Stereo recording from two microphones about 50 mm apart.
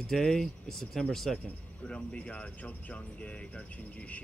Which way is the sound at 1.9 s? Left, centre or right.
Left.